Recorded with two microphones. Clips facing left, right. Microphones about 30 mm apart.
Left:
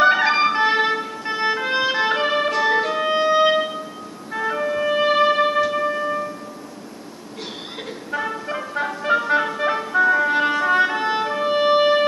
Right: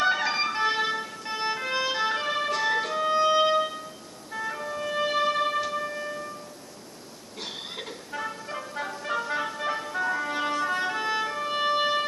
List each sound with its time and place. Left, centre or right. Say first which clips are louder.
0.0 s music: left 9 dB; left
8.1 s music: left 9 dB; left